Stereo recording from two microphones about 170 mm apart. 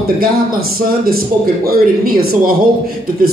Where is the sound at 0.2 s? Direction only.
60° right (ahead or behind).